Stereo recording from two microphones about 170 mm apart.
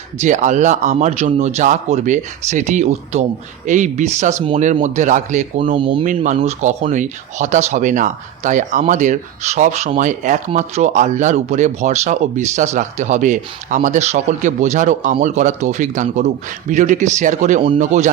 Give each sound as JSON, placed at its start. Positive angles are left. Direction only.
{"t": 0.2, "sound": "speech", "side_deg": -45}
{"t": 5.7, "sound": "speech", "side_deg": -30}
{"t": 6.1, "sound": "speech", "side_deg": -45}